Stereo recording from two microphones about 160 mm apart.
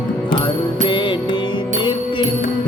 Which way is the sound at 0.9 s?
30° left (ahead or behind).